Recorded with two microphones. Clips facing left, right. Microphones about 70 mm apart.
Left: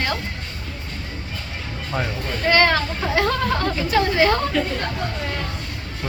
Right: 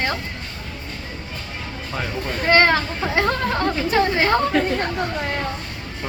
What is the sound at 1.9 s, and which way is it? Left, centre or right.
Speech, centre.